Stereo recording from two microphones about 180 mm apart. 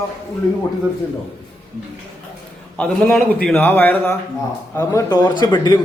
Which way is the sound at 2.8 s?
5° left (ahead or behind).